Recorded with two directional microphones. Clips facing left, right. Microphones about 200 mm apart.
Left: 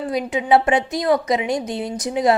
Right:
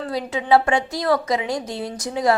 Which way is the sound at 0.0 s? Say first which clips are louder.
Left 3 dB; 15° left (ahead or behind).